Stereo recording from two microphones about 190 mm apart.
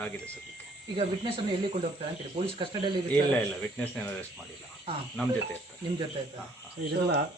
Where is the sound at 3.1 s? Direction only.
5° left (ahead or behind).